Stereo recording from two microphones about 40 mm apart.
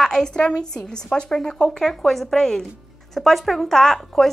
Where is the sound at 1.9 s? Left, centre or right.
Centre.